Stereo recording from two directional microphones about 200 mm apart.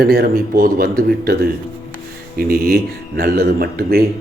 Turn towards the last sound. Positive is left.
turn(degrees=-50)  # may be behind; listen again after turning